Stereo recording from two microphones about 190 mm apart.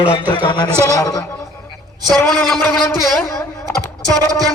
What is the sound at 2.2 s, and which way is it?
Speech, 5° left (ahead or behind).